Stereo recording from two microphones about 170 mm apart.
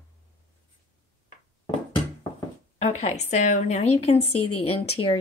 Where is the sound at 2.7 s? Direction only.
40° left (ahead or behind).